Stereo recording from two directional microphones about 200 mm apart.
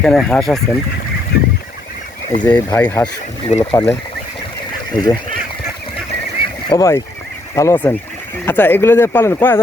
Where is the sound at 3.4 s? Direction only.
25° left (ahead or behind).